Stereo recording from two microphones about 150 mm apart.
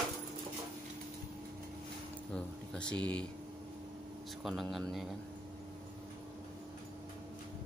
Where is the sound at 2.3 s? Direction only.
5° left (ahead or behind).